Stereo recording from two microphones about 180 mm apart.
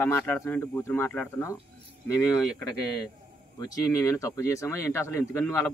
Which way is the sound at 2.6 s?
20° left (ahead or behind).